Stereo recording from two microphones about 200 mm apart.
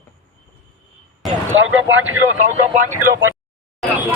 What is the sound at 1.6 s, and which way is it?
Speech, 75° right (ahead or behind).